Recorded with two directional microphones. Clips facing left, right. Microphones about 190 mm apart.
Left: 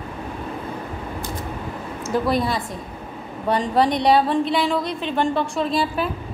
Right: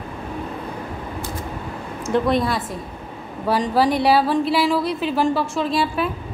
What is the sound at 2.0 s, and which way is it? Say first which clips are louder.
A woman's voice: right 2 dB; centre (ahead or behind).